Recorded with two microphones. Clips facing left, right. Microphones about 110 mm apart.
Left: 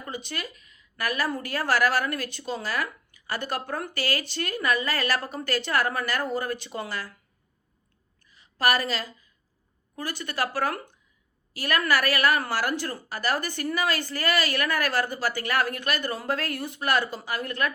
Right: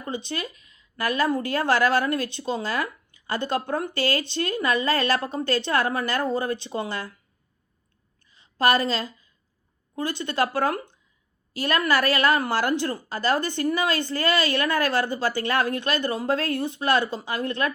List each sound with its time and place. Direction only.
0.0 s a woman's voice: 25° right (ahead or behind)
8.3 s a sound: 25° right (ahead or behind)
9.9 s a woman's voice: 20° right (ahead or behind)